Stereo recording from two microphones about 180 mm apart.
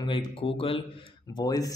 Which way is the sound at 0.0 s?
25° left (ahead or behind).